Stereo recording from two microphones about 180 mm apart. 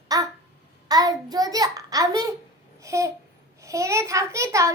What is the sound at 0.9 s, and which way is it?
A child's voice, 20° right (ahead or behind).